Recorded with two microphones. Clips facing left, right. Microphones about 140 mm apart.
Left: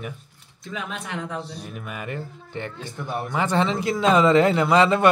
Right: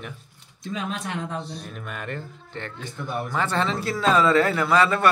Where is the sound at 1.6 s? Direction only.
5° left (ahead or behind).